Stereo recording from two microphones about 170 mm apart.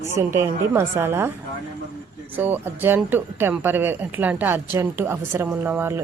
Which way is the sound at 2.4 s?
10° right (ahead or behind).